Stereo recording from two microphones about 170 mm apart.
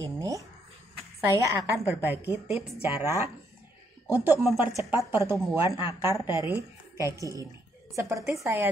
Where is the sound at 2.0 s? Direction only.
10° right (ahead or behind).